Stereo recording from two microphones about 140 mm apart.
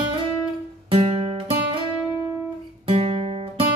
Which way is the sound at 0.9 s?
40° right (ahead or behind).